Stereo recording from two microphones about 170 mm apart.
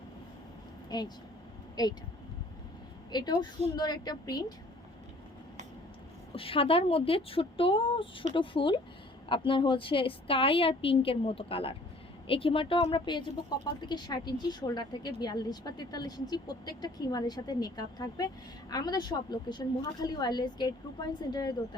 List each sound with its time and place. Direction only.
0.9 s speech: 25° left (ahead or behind)
3.1 s a woman's voice: 25° left (ahead or behind)
6.3 s a woman's voice: 35° left (ahead or behind)